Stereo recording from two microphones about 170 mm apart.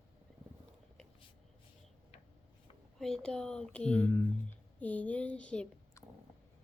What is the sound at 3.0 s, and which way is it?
Speech, 5° left (ahead or behind).